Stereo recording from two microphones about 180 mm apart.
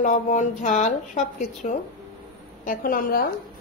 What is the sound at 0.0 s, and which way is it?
A woman's voice, 40° left (ahead or behind).